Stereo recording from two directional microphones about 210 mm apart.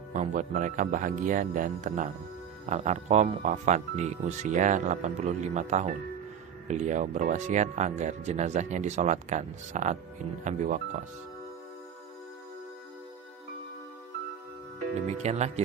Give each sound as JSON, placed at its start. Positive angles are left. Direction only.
{"t": 0.1, "sound": "speech", "side_deg": -35}
{"t": 14.9, "sound": "speech", "side_deg": -30}